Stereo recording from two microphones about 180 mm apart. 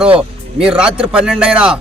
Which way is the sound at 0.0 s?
5° right (ahead or behind).